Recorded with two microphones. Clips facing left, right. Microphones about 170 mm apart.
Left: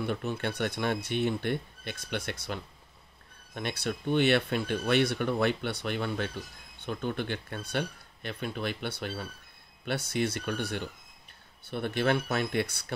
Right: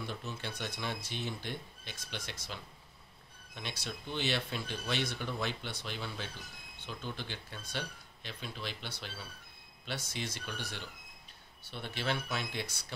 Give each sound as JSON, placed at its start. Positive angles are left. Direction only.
{"t": 0.0, "sound": "speech", "side_deg": 60}